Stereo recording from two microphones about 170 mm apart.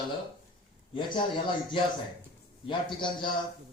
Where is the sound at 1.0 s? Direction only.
25° left (ahead or behind).